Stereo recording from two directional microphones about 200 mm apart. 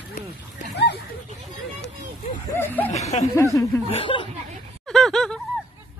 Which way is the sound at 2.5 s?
10° left (ahead or behind).